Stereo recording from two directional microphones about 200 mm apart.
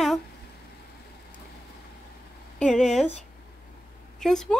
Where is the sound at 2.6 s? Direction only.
Centre (ahead or behind).